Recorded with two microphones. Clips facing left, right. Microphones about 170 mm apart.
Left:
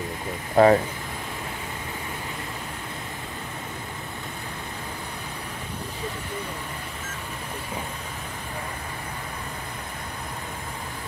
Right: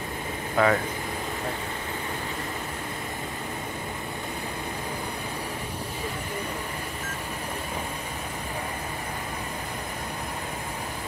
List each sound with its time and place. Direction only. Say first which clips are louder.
0.6 s speech: left 6 dB; 35° left (ahead or behind)